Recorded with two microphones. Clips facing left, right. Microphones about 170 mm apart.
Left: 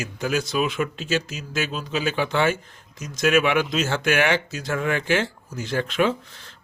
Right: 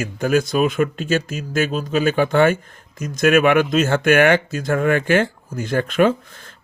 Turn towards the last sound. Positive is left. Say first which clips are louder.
# right 5 dB
turn(degrees=-50)  # may be behind; listen again after turning